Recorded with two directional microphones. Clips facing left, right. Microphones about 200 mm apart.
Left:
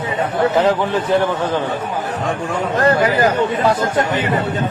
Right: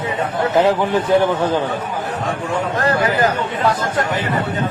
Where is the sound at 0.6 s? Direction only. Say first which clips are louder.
Even; 15° right (ahead or behind).